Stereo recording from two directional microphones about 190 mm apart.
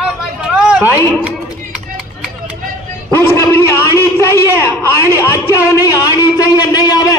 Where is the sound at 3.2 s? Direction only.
15° left (ahead or behind).